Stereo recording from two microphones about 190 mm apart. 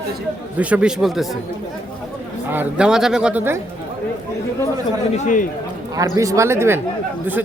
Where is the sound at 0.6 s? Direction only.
5° right (ahead or behind).